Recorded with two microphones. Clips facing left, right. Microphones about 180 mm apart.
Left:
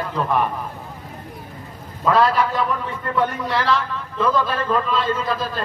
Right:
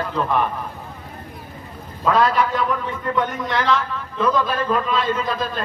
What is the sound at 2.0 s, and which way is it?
A man's voice, centre (ahead or behind).